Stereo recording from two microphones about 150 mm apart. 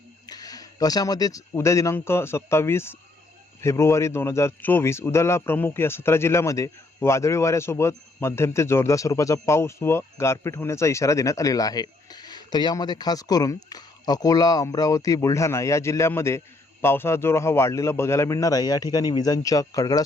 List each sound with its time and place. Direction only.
0.3 s a man's voice: 25° left (ahead or behind)